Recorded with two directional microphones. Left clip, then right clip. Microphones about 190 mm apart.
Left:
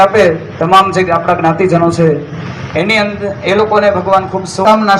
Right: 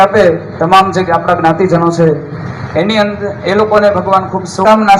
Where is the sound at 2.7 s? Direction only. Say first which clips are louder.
Even; 25° left (ahead or behind).